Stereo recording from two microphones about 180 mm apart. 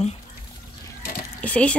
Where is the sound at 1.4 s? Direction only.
5° left (ahead or behind).